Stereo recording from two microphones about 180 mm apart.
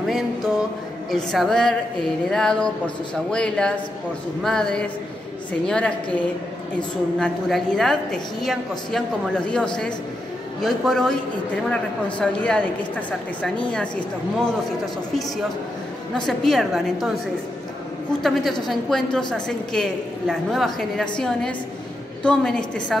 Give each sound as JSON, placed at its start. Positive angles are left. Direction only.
{"t": 1.1, "sound": "a woman's voice", "side_deg": 0}
{"t": 16.3, "sound": "a woman's voice", "side_deg": 0}
{"t": 18.2, "sound": "a woman's voice", "side_deg": 0}